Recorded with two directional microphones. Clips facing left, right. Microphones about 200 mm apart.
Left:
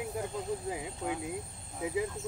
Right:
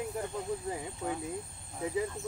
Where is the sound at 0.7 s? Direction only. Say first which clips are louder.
Even; 15° left (ahead or behind).